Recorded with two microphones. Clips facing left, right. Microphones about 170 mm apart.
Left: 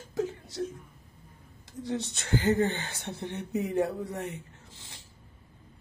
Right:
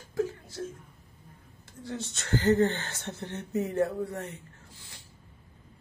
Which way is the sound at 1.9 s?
20° left (ahead or behind).